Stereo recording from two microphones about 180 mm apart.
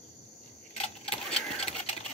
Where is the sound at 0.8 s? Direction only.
35° left (ahead or behind).